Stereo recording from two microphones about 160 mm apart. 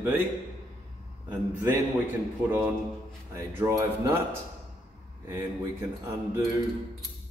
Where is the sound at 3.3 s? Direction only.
20° right (ahead or behind).